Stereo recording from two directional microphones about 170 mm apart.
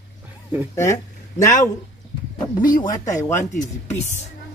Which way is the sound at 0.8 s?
15° left (ahead or behind).